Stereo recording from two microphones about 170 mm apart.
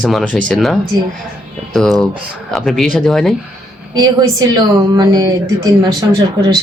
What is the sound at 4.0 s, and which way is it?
A woman's voice, 25° right (ahead or behind).